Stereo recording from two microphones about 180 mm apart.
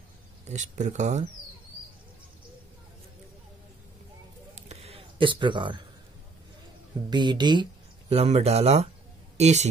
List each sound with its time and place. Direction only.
0.5 s speech: 40° right (ahead or behind)
4.6 s a sound: 35° right (ahead or behind)
7.1 s speech: 25° right (ahead or behind)
8.1 s speech: 35° right (ahead or behind)